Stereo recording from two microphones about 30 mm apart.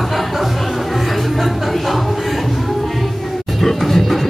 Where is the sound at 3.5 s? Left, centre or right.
Centre.